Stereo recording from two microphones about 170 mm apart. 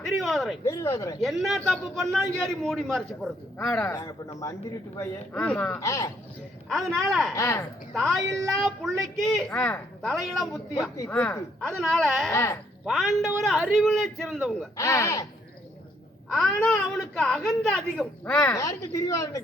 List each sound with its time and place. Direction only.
0.2 s a woman's voice: centre (ahead or behind)
0.6 s speech: 15° left (ahead or behind)
1.2 s a woman's voice: centre (ahead or behind)
3.8 s a woman's voice: 20° left (ahead or behind)
6.7 s a woman's voice: centre (ahead or behind)
7.3 s speech: 15° left (ahead or behind)
7.9 s a woman's voice: centre (ahead or behind)
12.3 s speech: 15° left (ahead or behind)
12.8 s a man's voice: centre (ahead or behind)
14.8 s speech: 15° left (ahead or behind)
16.3 s a woman's voice: 5° left (ahead or behind)
18.5 s a woman's voice: 20° left (ahead or behind)